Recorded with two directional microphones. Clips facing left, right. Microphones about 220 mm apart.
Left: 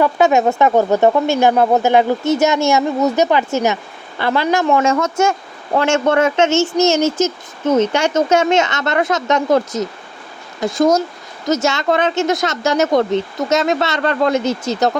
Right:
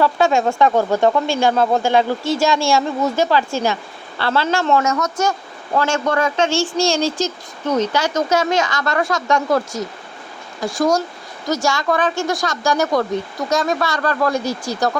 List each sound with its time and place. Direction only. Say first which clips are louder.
0.0 s a woman's voice: left 3 dB; 20° left (ahead or behind)
4.9 s speech: left 4 dB; 25° left (ahead or behind)